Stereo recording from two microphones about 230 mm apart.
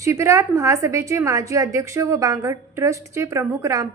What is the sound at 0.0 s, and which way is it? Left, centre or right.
A woman's voice, centre.